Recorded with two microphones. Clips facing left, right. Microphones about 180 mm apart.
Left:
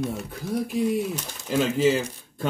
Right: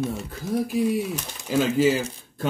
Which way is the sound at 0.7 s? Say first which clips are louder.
Left 1 dB; 5° right (ahead or behind).